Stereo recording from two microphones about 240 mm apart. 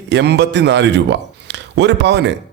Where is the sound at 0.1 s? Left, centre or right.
Right.